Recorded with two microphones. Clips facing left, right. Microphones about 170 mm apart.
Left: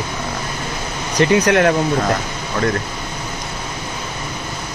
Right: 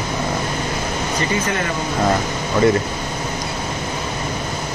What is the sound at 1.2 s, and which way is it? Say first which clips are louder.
Speech: left 10 dB; 75° left (ahead or behind).